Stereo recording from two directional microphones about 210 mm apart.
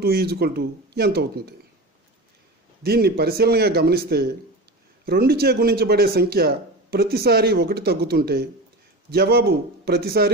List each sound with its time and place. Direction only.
0.0 s speech: 50° right (ahead or behind)
2.8 s speech: 50° right (ahead or behind)